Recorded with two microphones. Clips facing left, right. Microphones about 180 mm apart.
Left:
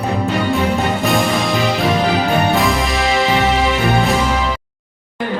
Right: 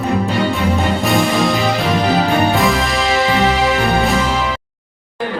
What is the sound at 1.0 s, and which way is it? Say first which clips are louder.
Music: right 3 dB; centre (ahead or behind).